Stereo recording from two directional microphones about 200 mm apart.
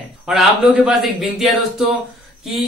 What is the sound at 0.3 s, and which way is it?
A woman's voice, centre (ahead or behind).